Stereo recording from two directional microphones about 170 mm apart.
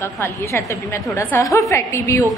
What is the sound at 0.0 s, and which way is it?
A woman's voice, 15° left (ahead or behind).